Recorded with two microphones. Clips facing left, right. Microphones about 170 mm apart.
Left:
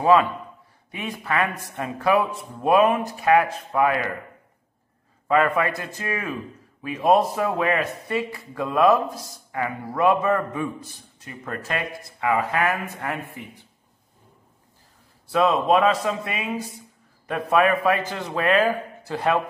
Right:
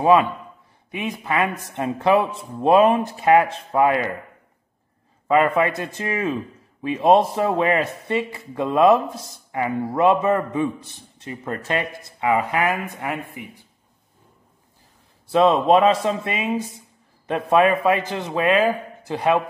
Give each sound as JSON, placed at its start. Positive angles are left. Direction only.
{"t": 0.0, "sound": "a man's voice", "side_deg": -15}
{"t": 5.3, "sound": "a man's voice", "side_deg": -20}
{"t": 15.3, "sound": "a man's voice", "side_deg": -30}